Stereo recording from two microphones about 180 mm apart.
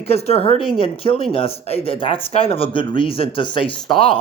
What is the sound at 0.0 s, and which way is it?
Speech, 35° left (ahead or behind).